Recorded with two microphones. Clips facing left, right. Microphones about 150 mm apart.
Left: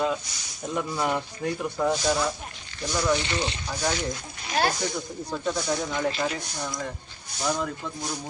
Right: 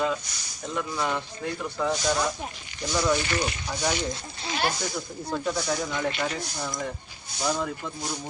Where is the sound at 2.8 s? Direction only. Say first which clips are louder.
Even; 15° right (ahead or behind).